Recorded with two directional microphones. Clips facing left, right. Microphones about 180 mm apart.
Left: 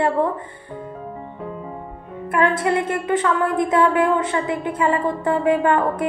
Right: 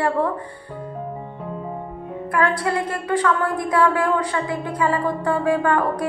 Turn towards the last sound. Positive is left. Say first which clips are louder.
# left 2 dB
turn(degrees=25)  # may be behind; listen again after turning